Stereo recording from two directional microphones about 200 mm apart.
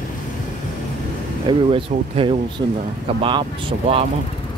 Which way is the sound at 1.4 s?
25° right (ahead or behind).